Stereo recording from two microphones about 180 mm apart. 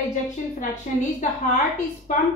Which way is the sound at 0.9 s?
45° left (ahead or behind).